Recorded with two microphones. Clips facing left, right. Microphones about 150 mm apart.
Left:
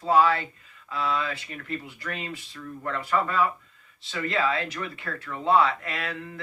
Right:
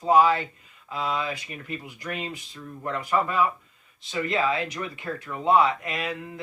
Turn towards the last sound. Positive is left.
turn(degrees=-15)  # may be behind; listen again after turning